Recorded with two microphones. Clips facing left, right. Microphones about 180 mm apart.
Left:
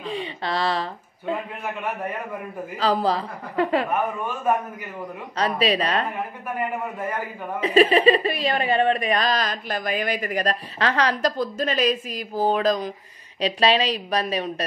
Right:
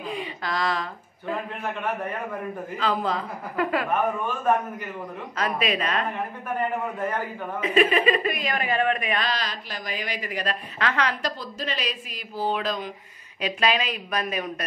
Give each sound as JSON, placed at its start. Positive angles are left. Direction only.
{"t": 0.1, "sound": "speech", "side_deg": 30}
{"t": 2.8, "sound": "a woman's voice", "side_deg": 35}
{"t": 5.4, "sound": "a woman's voice", "side_deg": 30}
{"t": 6.6, "sound": "a man's voice", "side_deg": 10}
{"t": 7.6, "sound": "a woman's voice", "side_deg": 35}